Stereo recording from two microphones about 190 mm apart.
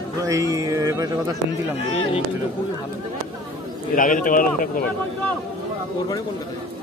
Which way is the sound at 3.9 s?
45° left (ahead or behind).